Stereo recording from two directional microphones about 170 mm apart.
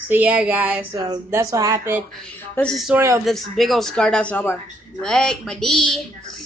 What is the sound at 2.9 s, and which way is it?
Speech, 15° right (ahead or behind).